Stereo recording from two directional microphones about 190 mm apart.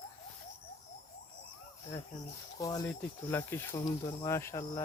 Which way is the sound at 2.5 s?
20° left (ahead or behind).